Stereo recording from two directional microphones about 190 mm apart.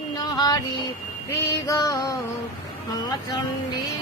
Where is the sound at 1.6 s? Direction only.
20° left (ahead or behind).